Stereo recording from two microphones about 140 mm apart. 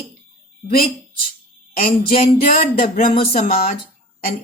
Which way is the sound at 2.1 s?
85° left.